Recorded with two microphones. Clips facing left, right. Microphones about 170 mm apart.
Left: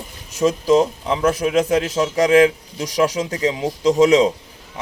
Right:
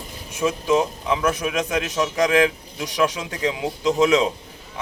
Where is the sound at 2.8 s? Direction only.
40° left (ahead or behind).